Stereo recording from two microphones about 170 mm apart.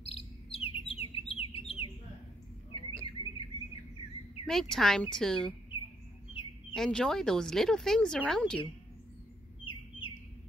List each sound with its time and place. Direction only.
0.1 s chirp: 35° left (ahead or behind)
1.3 s bird: 35° left (ahead or behind)
2.7 s a sound: 35° left (ahead or behind)
4.5 s speech: centre (ahead or behind)
6.7 s speech: 5° left (ahead or behind)
9.7 s bird: 30° left (ahead or behind)